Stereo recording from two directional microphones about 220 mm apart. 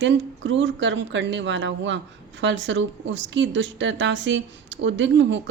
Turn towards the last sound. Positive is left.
turn(degrees=-55)  # may be behind; listen again after turning